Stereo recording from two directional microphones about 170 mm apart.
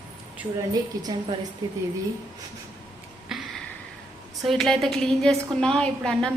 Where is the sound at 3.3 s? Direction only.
5° right (ahead or behind).